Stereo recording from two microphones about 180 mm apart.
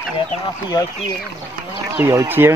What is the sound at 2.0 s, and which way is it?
Speech, 10° right (ahead or behind).